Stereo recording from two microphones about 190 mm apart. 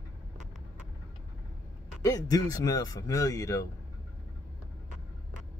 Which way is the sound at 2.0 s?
20° left (ahead or behind).